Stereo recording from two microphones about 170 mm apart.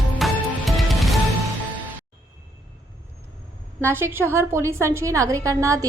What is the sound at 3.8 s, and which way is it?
A woman's voice, 15° right (ahead or behind).